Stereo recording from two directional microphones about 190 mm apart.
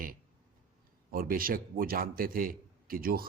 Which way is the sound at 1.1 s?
50° right (ahead or behind).